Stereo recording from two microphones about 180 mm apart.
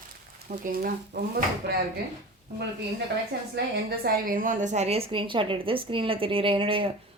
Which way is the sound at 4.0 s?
50° right (ahead or behind).